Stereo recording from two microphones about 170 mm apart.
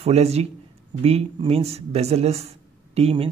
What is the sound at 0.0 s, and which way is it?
Speech, 40° right (ahead or behind).